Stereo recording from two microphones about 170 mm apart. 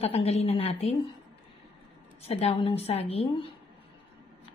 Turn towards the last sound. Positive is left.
turn(degrees=35)  # may be behind; listen again after turning